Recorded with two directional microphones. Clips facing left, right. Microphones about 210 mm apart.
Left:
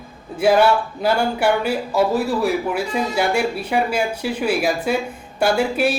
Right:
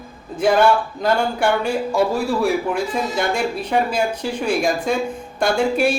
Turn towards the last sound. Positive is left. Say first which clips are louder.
# right 1 dB
turn(degrees=5)  # may be behind; listen again after turning